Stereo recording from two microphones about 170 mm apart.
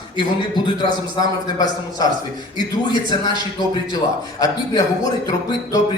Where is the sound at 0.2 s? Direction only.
25° left (ahead or behind).